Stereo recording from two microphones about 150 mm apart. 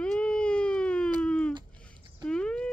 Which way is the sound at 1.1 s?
5° left (ahead or behind).